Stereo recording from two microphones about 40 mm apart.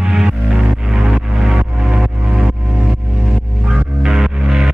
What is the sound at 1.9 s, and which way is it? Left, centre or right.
Music, right.